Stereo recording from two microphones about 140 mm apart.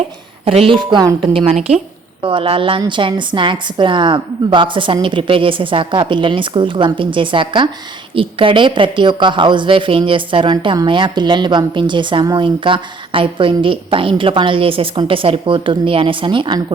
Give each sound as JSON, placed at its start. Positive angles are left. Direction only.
{"t": 0.4, "sound": "a woman's voice", "side_deg": -40}
{"t": 1.5, "sound": "a woman's voice", "side_deg": -45}